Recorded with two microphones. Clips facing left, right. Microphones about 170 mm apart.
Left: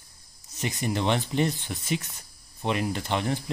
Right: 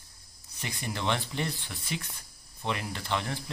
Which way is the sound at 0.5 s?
20° left (ahead or behind).